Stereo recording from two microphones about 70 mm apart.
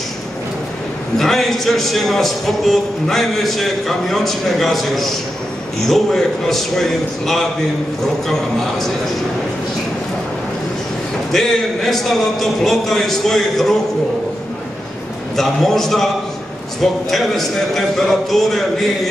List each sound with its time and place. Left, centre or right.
1.1 s a man's voice: centre
11.3 s a man's voice: centre
15.3 s a man's voice: centre